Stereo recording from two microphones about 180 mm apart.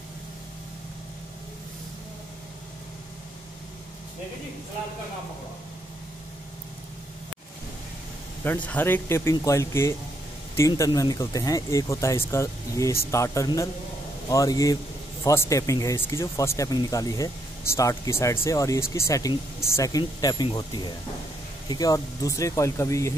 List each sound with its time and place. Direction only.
8.5 s speech: 10° left (ahead or behind)